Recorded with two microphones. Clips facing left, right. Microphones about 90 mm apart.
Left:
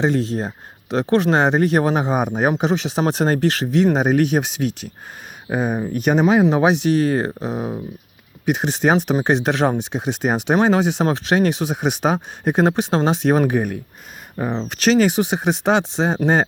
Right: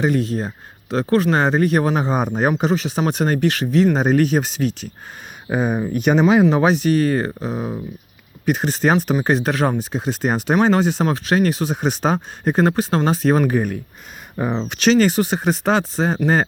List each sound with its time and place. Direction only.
0.0 s speech: 25° left (ahead or behind)
5.5 s speech: centre (ahead or behind)
6.5 s speech: 15° left (ahead or behind)
14.7 s speech: centre (ahead or behind)
14.9 s speech: 15° left (ahead or behind)